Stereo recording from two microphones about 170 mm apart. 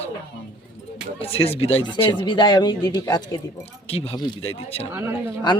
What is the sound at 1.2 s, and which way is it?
Speech, 35° left (ahead or behind).